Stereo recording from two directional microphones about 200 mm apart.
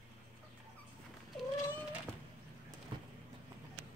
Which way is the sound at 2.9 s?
25° right (ahead or behind).